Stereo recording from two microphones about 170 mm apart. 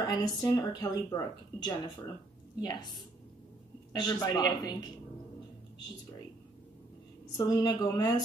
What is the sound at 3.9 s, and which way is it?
Speech, 25° left (ahead or behind).